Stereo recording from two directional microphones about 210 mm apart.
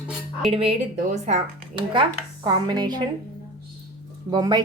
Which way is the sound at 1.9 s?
20° right (ahead or behind).